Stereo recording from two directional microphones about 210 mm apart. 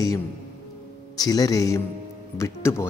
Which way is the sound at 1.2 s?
15° left (ahead or behind).